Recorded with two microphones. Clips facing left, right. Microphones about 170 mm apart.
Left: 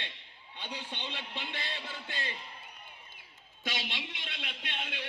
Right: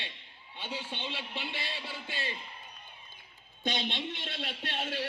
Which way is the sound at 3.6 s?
25° right (ahead or behind).